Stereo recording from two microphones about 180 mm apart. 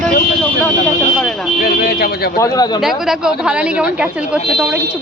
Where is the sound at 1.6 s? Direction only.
55° left (ahead or behind).